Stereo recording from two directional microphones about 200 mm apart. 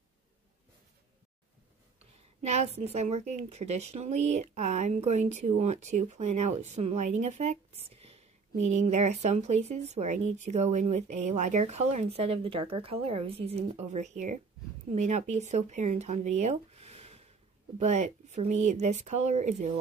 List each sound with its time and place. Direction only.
2.4 s a woman's voice: 35° right (ahead or behind)